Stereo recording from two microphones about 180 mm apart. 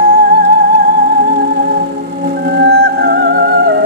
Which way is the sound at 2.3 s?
60° right (ahead or behind).